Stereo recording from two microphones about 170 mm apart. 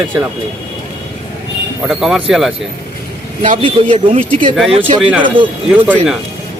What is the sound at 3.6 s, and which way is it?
Speech, 35° right (ahead or behind).